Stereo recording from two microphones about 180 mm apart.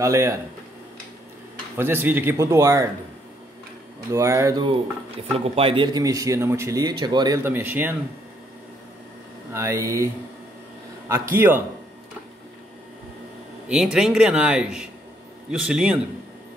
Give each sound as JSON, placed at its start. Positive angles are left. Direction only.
{"t": 0.0, "sound": "speech", "side_deg": -15}
{"t": 1.8, "sound": "speech", "side_deg": -10}
{"t": 4.1, "sound": "speech", "side_deg": -15}
{"t": 5.4, "sound": "speech", "side_deg": -30}
{"t": 9.5, "sound": "speech", "side_deg": -15}
{"t": 11.3, "sound": "speech", "side_deg": -10}
{"t": 13.7, "sound": "speech", "side_deg": -5}